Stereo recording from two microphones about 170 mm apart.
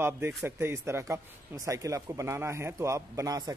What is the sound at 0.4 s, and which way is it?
Speech, 15° right (ahead or behind).